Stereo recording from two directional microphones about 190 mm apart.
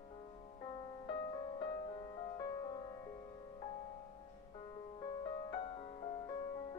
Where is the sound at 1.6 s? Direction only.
25° left (ahead or behind).